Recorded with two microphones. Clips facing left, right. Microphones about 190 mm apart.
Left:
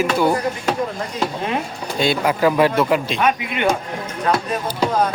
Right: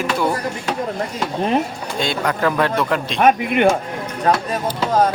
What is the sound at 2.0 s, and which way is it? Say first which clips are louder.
Speech: left 3 dB; 5° left (ahead or behind).